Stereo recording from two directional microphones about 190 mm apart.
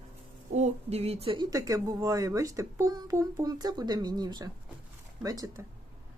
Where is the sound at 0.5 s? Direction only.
35° right (ahead or behind).